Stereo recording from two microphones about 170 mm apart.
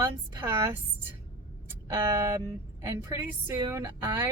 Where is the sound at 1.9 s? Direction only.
15° right (ahead or behind).